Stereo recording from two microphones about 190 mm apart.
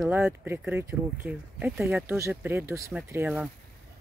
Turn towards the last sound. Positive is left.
turn(degrees=-10)  # may be behind; listen again after turning